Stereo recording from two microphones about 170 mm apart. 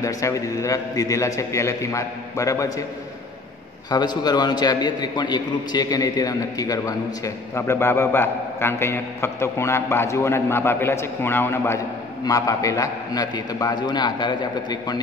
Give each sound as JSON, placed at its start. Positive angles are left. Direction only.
{"t": 0.0, "sound": "a man's voice", "side_deg": 20}
{"t": 3.9, "sound": "a man's voice", "side_deg": 25}